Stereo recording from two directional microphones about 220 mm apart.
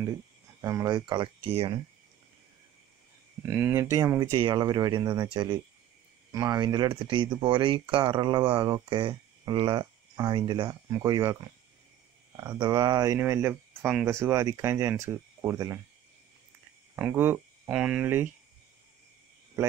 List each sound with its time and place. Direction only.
0.0 s speech: 15° right (ahead or behind)
3.4 s speech: 10° right (ahead or behind)
16.9 s speech: 10° right (ahead or behind)